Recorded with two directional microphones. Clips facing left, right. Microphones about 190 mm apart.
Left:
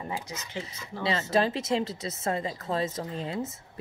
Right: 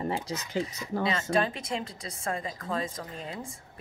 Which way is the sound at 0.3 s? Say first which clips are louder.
Right 6 dB; 40° right (ahead or behind).